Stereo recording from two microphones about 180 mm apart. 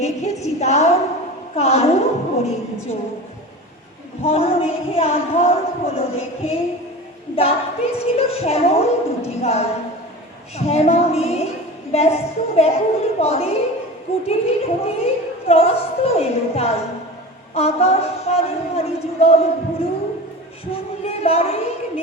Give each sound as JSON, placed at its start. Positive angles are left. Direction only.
{"t": 0.0, "sound": "a sound", "side_deg": 40}
{"t": 1.5, "sound": "speech", "side_deg": 35}
{"t": 4.2, "sound": "speech", "side_deg": 35}